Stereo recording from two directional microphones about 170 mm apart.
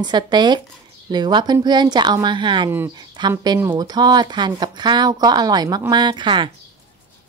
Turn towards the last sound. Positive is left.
turn(degrees=-30)  # may be behind; listen again after turning